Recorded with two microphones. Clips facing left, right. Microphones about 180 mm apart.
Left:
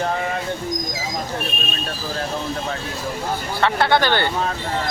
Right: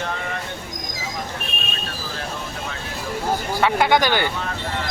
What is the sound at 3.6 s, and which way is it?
Speech, 15° right (ahead or behind).